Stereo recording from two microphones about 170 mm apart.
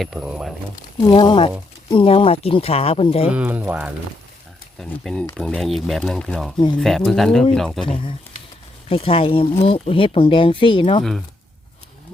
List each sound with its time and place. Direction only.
0.0 s speech: 5° right (ahead or behind)
1.1 s speech: 30° left (ahead or behind)
3.2 s speech: 5° right (ahead or behind)
4.8 s speech: 5° left (ahead or behind)
8.9 s speech: 35° left (ahead or behind)